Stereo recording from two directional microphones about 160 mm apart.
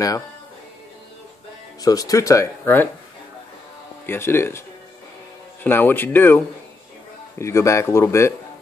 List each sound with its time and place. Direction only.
1.8 s speech: 20° left (ahead or behind)
4.0 s speech: 15° left (ahead or behind)